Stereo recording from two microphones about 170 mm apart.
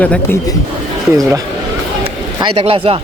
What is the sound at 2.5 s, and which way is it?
Speech, 35° right (ahead or behind).